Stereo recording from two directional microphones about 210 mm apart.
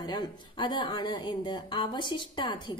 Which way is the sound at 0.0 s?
20° left (ahead or behind).